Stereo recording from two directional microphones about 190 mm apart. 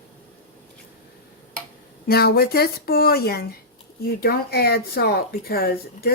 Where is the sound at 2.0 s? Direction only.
55° left (ahead or behind).